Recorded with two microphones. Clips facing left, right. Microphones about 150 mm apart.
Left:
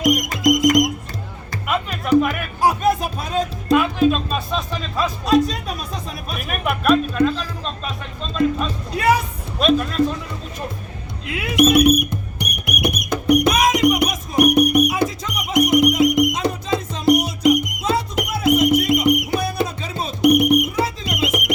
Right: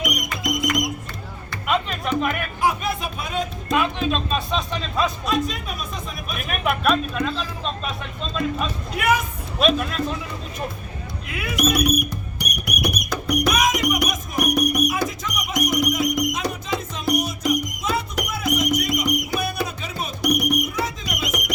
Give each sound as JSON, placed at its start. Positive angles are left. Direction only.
{"t": 0.0, "sound": "music", "side_deg": 40}
{"t": 1.6, "sound": "music", "side_deg": 5}
{"t": 2.6, "sound": "music", "side_deg": 40}
{"t": 3.7, "sound": "music", "side_deg": 5}
{"t": 4.1, "sound": "speech", "side_deg": 5}
{"t": 5.2, "sound": "speech", "side_deg": 35}
{"t": 6.3, "sound": "speech", "side_deg": 0}
{"t": 9.0, "sound": "speech", "side_deg": 35}
{"t": 9.6, "sound": "speech", "side_deg": 0}
{"t": 11.4, "sound": "speech", "side_deg": 25}
{"t": 12.4, "sound": "music", "side_deg": 25}